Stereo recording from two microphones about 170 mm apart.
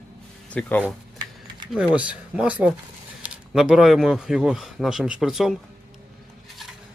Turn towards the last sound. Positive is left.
turn(degrees=0)  # may be behind; listen again after turning